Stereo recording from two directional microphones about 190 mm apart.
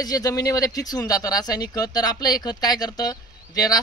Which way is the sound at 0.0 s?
20° left (ahead or behind).